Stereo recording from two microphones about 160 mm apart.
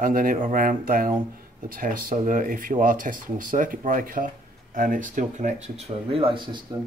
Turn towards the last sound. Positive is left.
turn(degrees=-35)  # may be behind; listen again after turning